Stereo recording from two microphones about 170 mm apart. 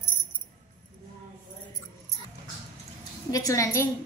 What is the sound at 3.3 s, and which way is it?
Speech, 20° left (ahead or behind).